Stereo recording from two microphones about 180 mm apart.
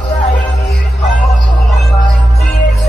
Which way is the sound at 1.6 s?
Centre (ahead or behind).